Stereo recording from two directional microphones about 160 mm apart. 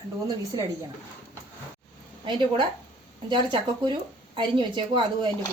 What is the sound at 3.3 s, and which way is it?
Speech, 30° right (ahead or behind).